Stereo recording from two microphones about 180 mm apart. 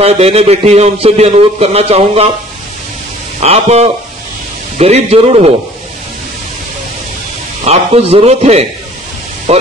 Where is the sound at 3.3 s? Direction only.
35° right (ahead or behind).